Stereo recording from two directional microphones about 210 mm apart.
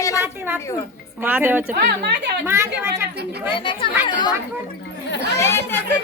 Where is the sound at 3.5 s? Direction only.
25° left (ahead or behind).